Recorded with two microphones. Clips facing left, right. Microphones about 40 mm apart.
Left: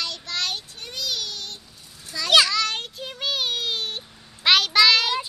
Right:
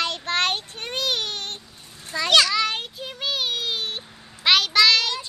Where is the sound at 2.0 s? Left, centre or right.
Right.